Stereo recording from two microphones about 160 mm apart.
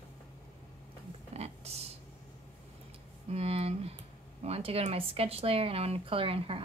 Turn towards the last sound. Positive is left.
turn(degrees=-35)  # may be behind; listen again after turning